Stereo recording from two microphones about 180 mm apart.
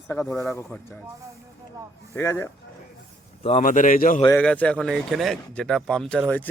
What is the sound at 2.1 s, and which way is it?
Speech, 15° left (ahead or behind).